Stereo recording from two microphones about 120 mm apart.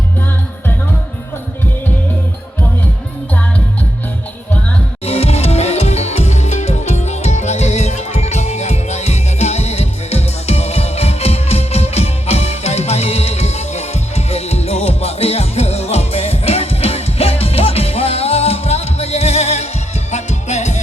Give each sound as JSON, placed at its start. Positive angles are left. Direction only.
{"t": 5.0, "sound": "music", "side_deg": 60}